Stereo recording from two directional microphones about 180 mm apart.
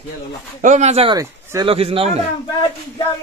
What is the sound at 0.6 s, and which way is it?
Speech, 40° right (ahead or behind).